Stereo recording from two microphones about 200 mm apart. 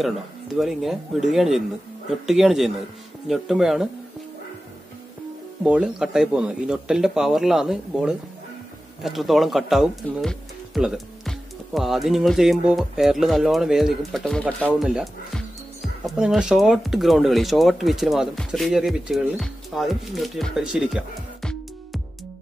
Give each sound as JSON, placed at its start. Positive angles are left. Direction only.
{"t": 0.6, "sound": "speech", "side_deg": 0}
{"t": 5.6, "sound": "speech", "side_deg": -5}